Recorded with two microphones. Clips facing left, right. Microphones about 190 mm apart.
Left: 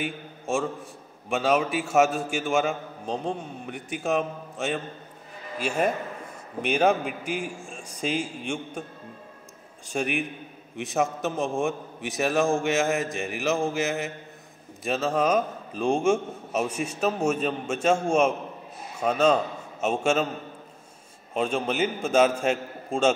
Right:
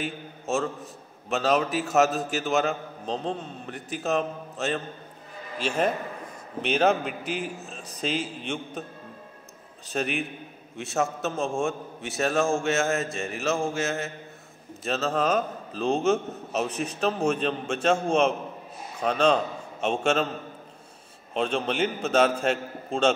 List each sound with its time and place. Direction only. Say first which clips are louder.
0.0 s a man's voice: left 1 dB; 10° left (ahead or behind)
9.8 s a man's voice: left 1 dB; 10° left (ahead or behind)
21.3 s a man's voice: even; 10° left (ahead or behind)